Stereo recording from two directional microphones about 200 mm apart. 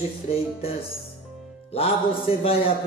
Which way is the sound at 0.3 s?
30° left (ahead or behind).